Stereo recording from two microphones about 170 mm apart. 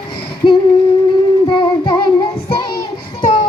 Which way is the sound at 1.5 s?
30° left (ahead or behind).